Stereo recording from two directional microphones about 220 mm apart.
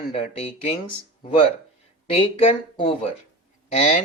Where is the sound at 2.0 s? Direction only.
25° left (ahead or behind).